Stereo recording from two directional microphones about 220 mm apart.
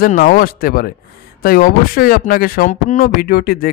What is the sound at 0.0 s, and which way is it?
Speech, 40° left (ahead or behind).